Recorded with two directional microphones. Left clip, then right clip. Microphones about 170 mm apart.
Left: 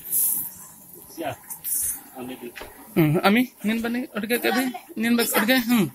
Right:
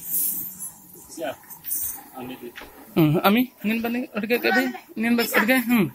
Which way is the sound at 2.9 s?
Centre (ahead or behind).